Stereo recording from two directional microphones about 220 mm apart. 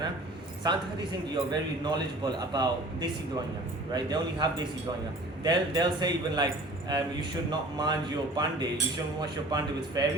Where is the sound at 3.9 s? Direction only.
20° right (ahead or behind).